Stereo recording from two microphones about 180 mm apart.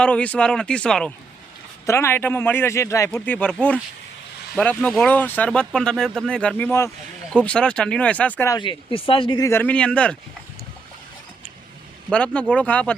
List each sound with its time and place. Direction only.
0.0 s speech: 5° left (ahead or behind)
8.5 s speech: 25° left (ahead or behind)
9.5 s speech: 10° left (ahead or behind)
12.1 s speech: 5° left (ahead or behind)